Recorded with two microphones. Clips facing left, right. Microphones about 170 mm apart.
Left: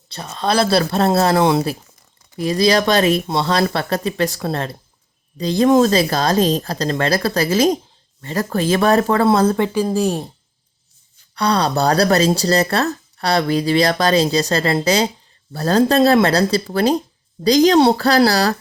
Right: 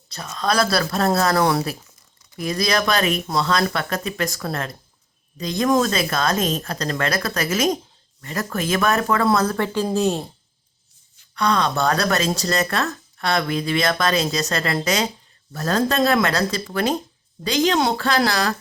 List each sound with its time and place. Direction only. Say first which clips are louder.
0.1 s speech: left 3 dB; 30° left (ahead or behind)
9.9 s speech: left 2 dB; 10° left (ahead or behind)
11.3 s speech: left 3 dB; 35° left (ahead or behind)